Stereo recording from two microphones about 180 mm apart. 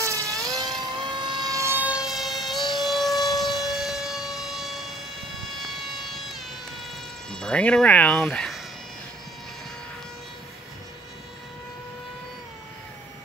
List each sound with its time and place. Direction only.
0.0 s vehicle: 15° right (ahead or behind); by 3.2 s centre (ahead or behind)
3.4 s civil defense siren: centre (ahead or behind)
5.6 s vehicle: centre (ahead or behind)
6.8 s cricket: 5° left (ahead or behind)